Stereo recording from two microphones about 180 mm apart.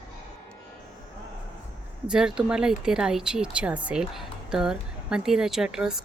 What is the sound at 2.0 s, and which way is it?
Speech, 5° right (ahead or behind).